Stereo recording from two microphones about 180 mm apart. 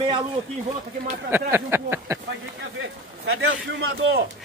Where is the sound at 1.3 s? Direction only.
10° right (ahead or behind).